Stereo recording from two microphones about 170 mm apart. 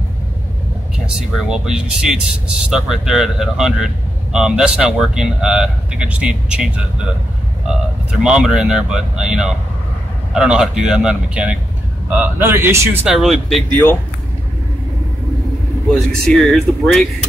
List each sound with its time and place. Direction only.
0.9 s a man's voice: 5° right (ahead or behind)
13.1 s speech: centre (ahead or behind)
15.9 s speech: 5° left (ahead or behind)